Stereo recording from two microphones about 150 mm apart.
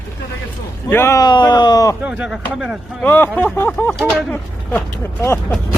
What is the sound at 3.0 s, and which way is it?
Speech, 10° left (ahead or behind).